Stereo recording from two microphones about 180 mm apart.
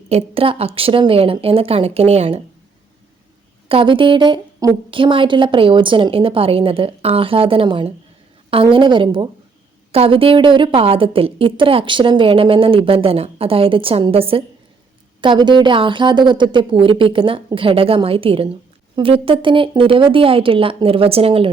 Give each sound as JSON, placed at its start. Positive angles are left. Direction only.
{"t": 0.1, "sound": "a woman's voice", "side_deg": -35}
{"t": 3.7, "sound": "a woman's voice", "side_deg": -30}